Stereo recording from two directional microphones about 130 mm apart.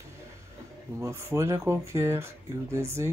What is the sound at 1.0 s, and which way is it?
Speech, 20° right (ahead or behind).